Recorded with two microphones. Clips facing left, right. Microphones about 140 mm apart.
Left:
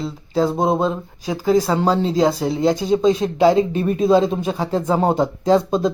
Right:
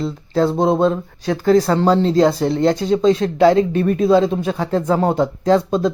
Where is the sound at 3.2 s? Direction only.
15° left (ahead or behind).